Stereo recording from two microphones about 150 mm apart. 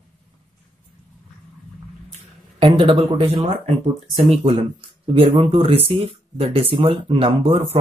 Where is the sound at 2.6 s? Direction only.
35° right (ahead or behind).